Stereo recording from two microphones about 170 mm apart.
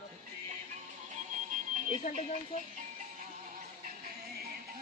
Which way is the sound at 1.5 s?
50° right (ahead or behind).